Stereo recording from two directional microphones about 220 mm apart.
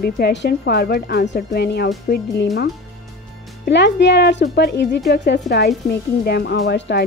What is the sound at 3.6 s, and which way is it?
Speech, 50° left (ahead or behind).